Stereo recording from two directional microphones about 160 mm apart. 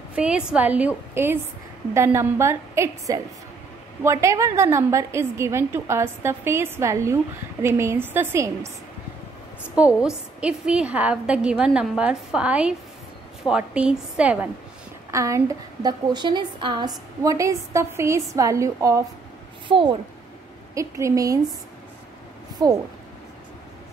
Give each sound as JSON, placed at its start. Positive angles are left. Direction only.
{"t": 0.1, "sound": "a woman's voice", "side_deg": -5}
{"t": 9.8, "sound": "a woman's voice", "side_deg": -5}
{"t": 15.0, "sound": "a woman's voice", "side_deg": -20}
{"t": 19.7, "sound": "a child's voice", "side_deg": -30}
{"t": 20.7, "sound": "a woman's voice", "side_deg": -20}
{"t": 22.6, "sound": "a woman's voice", "side_deg": -25}